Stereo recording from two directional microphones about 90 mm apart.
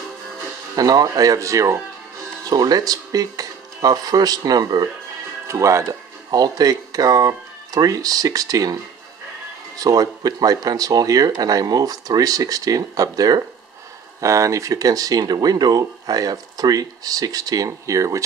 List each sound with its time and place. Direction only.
0.7 s speech: 45° right (ahead or behind)
5.5 s speech: 35° right (ahead or behind)
9.8 s speech: 45° right (ahead or behind)